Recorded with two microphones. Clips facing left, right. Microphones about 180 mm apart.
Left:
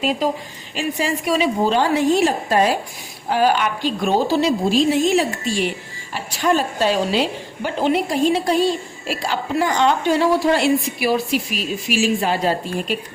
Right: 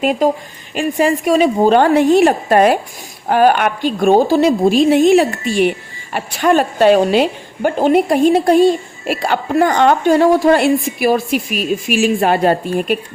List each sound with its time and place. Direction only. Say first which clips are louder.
0.0 s a woman's voice: right 6 dB; 55° right (ahead or behind)